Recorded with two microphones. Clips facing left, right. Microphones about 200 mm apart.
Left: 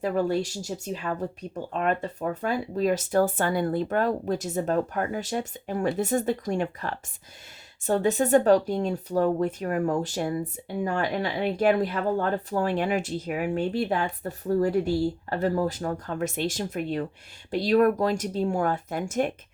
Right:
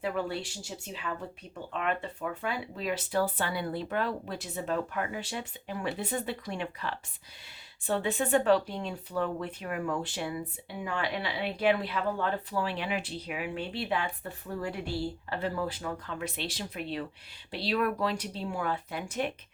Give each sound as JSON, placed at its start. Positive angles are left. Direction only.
{"t": 0.0, "sound": "speech", "side_deg": 40}